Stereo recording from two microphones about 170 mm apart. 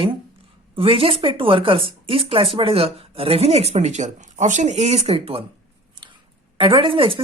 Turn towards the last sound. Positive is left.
turn(degrees=-30)  # may be behind; listen again after turning